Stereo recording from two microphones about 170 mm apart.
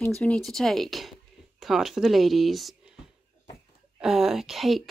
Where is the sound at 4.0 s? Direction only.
5° right (ahead or behind).